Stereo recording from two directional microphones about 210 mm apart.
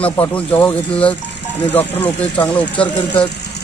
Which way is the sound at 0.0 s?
5° left (ahead or behind).